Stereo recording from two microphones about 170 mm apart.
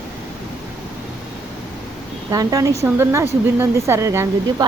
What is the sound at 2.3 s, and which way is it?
A woman's voice, 20° right (ahead or behind).